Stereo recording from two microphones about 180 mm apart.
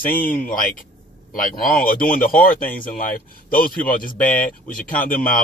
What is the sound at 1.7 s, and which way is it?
Speech, 50° left (ahead or behind).